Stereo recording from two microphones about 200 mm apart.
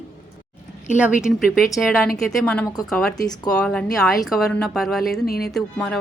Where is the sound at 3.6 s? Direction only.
5° left (ahead or behind).